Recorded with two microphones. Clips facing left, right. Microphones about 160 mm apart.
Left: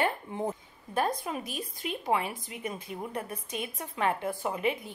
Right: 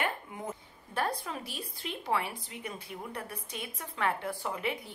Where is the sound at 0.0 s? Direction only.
30° left (ahead or behind).